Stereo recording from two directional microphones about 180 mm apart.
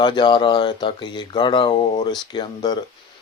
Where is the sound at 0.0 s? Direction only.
25° left (ahead or behind).